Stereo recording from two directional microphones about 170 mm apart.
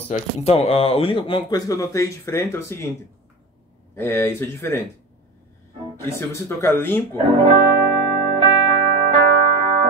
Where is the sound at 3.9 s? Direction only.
15° left (ahead or behind).